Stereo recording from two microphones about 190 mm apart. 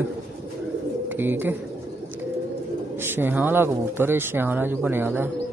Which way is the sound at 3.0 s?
10° right (ahead or behind).